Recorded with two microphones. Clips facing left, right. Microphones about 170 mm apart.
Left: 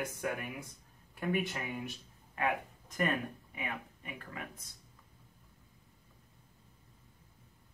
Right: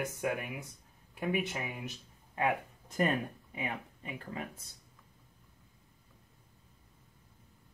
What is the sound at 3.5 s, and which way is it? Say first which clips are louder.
Speech: right 5 dB; 30° right (ahead or behind).